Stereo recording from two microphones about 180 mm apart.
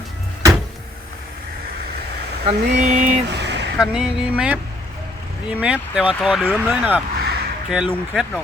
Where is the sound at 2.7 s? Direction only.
40° right (ahead or behind).